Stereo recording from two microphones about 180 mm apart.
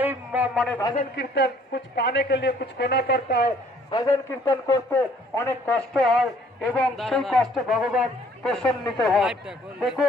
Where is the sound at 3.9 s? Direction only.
20° left (ahead or behind).